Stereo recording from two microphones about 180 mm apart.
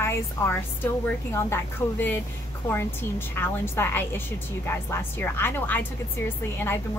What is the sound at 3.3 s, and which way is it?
A woman's voice, 10° left (ahead or behind).